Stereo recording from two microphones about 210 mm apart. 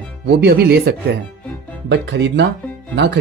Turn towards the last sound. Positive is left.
turn(degrees=-55)  # may be behind; listen again after turning